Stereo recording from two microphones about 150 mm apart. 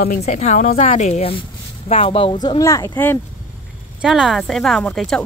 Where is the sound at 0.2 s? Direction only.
50° left (ahead or behind).